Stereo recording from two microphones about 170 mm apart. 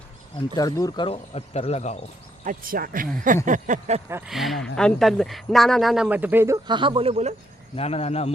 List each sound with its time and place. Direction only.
0.5 s speech: 20° left (ahead or behind); by 2.0 s 40° left (ahead or behind)
2.4 s speech: 55° right (ahead or behind)
3.4 s a sound: 45° right (ahead or behind)
4.3 s speech: centre (ahead or behind)
6.7 s speech: 30° right (ahead or behind)
7.8 s speech: 35° left (ahead or behind)